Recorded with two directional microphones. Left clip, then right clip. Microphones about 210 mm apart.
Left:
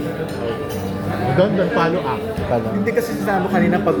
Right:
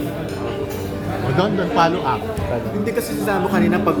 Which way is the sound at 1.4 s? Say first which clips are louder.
Even; 15° right (ahead or behind).